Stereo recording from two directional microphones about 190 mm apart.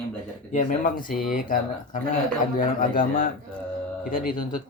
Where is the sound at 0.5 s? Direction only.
45° left (ahead or behind).